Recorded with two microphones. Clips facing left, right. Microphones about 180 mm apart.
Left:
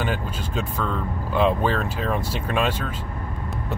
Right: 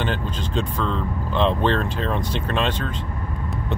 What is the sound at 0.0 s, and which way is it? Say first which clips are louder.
Speech: right 1 dB; 10° left (ahead or behind).